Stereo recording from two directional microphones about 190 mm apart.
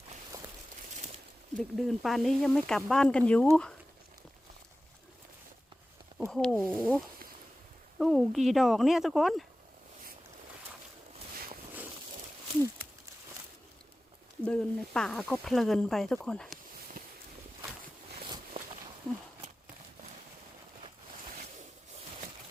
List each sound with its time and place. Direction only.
1.5 s speech: centre (ahead or behind)
6.1 s speech: centre (ahead or behind)
14.4 s speech: 5° left (ahead or behind)
17.0 s walk: 50° right (ahead or behind)